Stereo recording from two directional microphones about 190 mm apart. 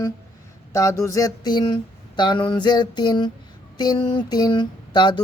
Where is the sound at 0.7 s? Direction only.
15° left (ahead or behind).